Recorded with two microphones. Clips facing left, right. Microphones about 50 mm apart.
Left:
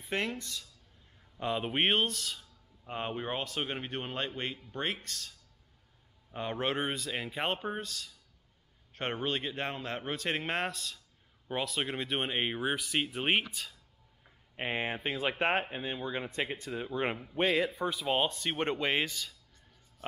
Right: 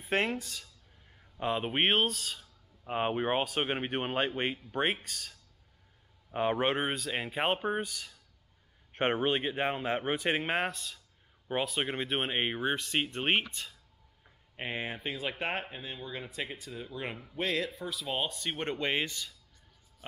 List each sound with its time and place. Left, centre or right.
0.1 s a man's voice: centre
1.4 s a man's voice: centre
6.3 s a man's voice: right; by 13.7 s centre
14.7 s speech: centre
17.4 s speech: centre
18.0 s speech: centre
18.3 s speech: centre